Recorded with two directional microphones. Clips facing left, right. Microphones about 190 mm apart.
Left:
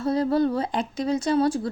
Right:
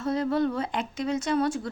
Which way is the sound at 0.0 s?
35° left (ahead or behind).